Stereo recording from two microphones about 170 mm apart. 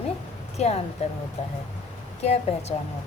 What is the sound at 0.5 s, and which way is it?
Speech, 40° left (ahead or behind).